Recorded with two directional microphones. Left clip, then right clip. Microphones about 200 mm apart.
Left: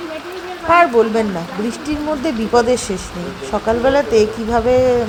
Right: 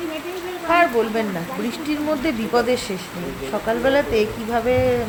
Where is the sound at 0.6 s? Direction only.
20° left (ahead or behind).